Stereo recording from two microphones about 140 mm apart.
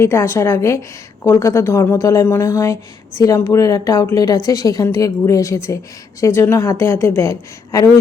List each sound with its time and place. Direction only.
0.0 s a woman's voice: 20° left (ahead or behind)